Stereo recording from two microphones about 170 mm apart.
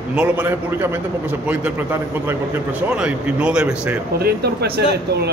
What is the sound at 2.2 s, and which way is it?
A man's voice, 10° right (ahead or behind).